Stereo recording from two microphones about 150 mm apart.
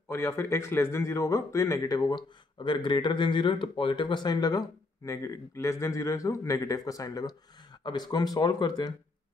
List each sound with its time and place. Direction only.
0.1 s speech: 15° left (ahead or behind)